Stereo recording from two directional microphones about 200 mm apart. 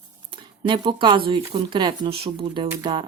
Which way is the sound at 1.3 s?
25° right (ahead or behind).